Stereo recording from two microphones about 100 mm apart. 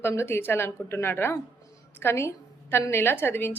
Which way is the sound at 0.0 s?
25° left (ahead or behind).